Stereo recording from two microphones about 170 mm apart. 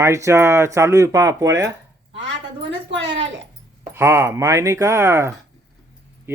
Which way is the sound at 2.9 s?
90° right.